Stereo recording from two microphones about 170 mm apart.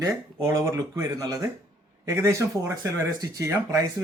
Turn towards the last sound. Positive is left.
turn(degrees=-20)  # may be behind; listen again after turning